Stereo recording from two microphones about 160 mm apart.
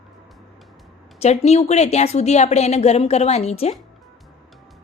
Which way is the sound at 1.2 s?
40° left (ahead or behind).